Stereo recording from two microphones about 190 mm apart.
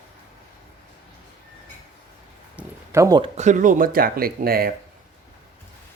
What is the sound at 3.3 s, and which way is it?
Speech, 40° right (ahead or behind).